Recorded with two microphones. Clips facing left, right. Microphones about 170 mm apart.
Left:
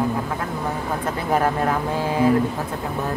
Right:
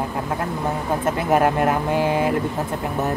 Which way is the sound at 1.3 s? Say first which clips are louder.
Right 2 dB; 20° right (ahead or behind).